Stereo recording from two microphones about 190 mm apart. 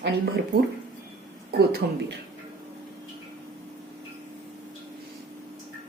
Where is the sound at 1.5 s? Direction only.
60° right (ahead or behind).